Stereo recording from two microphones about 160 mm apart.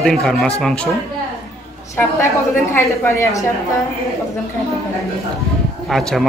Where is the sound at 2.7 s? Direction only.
15° left (ahead or behind).